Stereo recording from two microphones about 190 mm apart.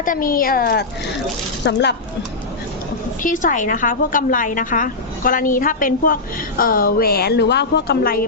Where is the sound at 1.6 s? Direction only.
65° left (ahead or behind).